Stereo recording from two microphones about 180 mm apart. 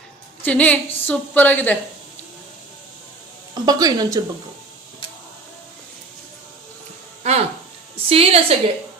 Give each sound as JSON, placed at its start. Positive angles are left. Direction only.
{"t": 0.4, "sound": "a woman's voice", "side_deg": 10}
{"t": 3.5, "sound": "a woman's voice", "side_deg": -20}
{"t": 7.2, "sound": "a sound", "side_deg": -35}
{"t": 8.1, "sound": "a woman's voice", "side_deg": -35}